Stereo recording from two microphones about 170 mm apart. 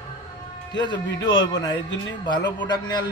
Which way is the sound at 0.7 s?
25° left (ahead or behind).